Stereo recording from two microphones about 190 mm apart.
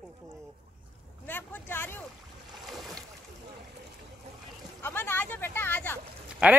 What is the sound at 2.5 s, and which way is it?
Boat, centre (ahead or behind).